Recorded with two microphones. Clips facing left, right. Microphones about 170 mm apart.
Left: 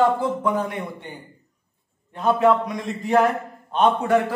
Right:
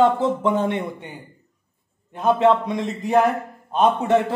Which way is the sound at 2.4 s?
25° right (ahead or behind).